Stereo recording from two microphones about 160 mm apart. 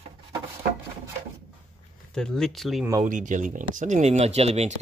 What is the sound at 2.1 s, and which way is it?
Speech, 5° left (ahead or behind).